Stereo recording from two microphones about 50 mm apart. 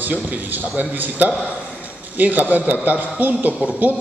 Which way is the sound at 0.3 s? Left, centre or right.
Right.